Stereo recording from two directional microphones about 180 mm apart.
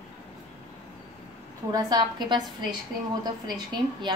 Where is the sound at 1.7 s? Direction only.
25° right (ahead or behind).